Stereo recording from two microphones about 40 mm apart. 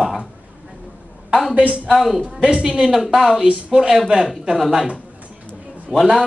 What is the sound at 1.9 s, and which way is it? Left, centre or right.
A woman's voice, centre.